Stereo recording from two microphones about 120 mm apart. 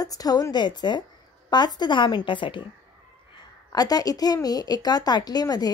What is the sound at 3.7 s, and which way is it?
A woman's voice, 35° left (ahead or behind).